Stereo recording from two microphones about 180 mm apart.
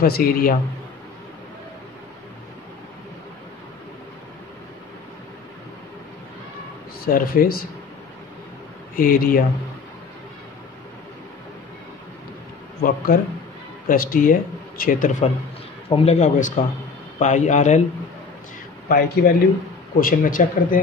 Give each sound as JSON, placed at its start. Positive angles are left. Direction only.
{"t": 0.0, "sound": "a man's voice", "side_deg": 55}
{"t": 7.1, "sound": "a man's voice", "side_deg": 55}
{"t": 8.9, "sound": "a man's voice", "side_deg": 50}
{"t": 12.8, "sound": "a man's voice", "side_deg": 50}
{"t": 18.9, "sound": "a man's voice", "side_deg": 60}